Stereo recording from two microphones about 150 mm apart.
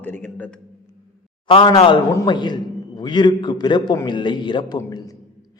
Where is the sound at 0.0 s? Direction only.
10° left (ahead or behind).